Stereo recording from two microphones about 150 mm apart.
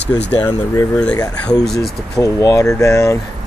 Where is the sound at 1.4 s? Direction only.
5° left (ahead or behind).